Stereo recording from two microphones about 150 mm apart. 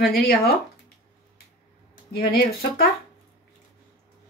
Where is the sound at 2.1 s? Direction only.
80° left.